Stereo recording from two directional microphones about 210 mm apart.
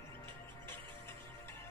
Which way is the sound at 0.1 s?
10° left (ahead or behind).